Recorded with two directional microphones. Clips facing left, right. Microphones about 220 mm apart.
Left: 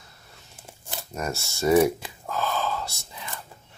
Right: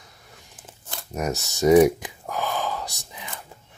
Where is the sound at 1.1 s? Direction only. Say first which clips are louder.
Right 4 dB; 20° right (ahead or behind).